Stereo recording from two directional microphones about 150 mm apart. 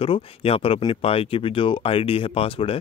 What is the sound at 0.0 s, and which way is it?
Speech, 40° left (ahead or behind).